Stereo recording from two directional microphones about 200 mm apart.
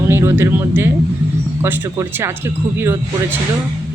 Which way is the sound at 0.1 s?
15° right (ahead or behind).